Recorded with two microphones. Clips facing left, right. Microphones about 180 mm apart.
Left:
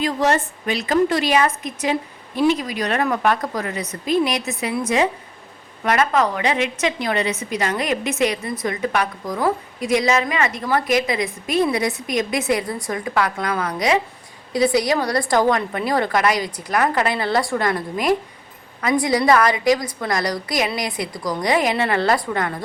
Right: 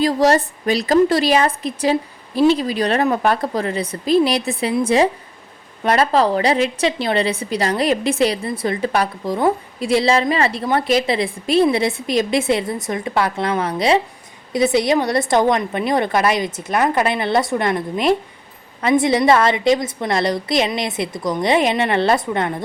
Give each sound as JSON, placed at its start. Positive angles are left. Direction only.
{"t": 0.0, "sound": "a woman's voice", "side_deg": -35}